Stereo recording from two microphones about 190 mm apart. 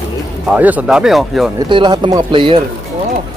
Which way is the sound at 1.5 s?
20° right (ahead or behind).